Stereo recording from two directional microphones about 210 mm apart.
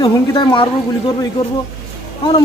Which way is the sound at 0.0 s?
25° left (ahead or behind).